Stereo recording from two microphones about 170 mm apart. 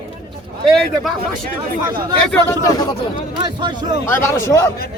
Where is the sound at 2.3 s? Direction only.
20° left (ahead or behind).